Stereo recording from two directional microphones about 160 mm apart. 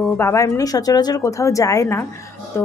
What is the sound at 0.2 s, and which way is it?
Speech, 20° left (ahead or behind).